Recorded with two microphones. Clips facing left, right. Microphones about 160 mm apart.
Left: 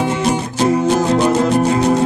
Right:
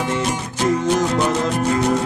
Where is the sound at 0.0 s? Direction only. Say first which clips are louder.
Left 5 dB; 35° left (ahead or behind).